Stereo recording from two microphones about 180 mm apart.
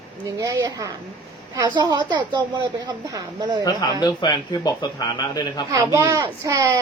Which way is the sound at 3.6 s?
25° left (ahead or behind).